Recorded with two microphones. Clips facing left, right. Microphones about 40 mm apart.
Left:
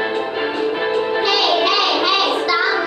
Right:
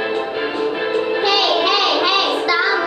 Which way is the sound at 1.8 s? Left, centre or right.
Centre.